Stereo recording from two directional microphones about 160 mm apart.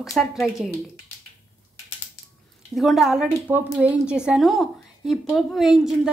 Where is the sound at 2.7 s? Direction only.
Centre (ahead or behind).